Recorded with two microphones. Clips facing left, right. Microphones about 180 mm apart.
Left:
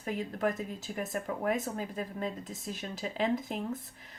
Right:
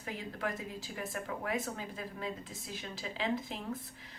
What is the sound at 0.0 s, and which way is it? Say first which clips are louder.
Speech: left 7 dB; 45° left (ahead or behind).